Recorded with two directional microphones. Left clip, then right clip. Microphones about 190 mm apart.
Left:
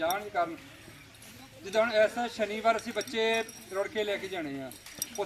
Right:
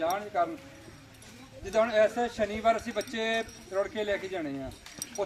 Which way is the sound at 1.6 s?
10° right (ahead or behind).